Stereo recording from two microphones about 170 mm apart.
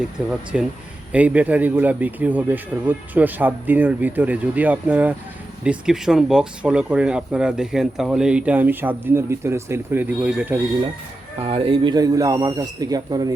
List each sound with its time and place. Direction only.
0.2 s speech: centre (ahead or behind)
11.4 s a man's voice: 30° right (ahead or behind)